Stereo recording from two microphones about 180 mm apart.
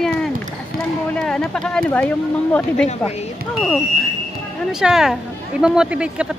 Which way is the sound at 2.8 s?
35° left (ahead or behind).